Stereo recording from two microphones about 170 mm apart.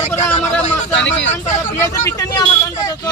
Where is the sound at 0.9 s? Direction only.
90° left.